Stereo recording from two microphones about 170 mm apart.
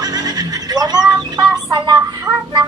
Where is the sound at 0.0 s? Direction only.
25° right (ahead or behind).